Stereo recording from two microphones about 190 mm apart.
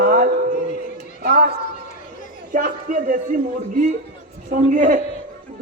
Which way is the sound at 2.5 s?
45° right (ahead or behind).